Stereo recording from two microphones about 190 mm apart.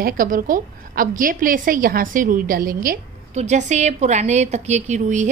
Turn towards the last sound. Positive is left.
turn(degrees=-40)  # may be behind; listen again after turning